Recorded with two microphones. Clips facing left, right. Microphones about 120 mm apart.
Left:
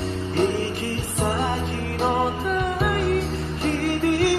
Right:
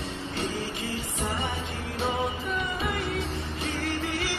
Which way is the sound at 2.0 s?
65° left (ahead or behind).